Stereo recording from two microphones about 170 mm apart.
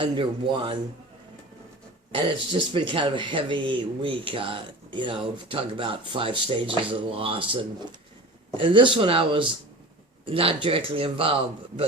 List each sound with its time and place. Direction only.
0.0 s speech: 30° right (ahead or behind)
2.1 s speech: 30° right (ahead or behind)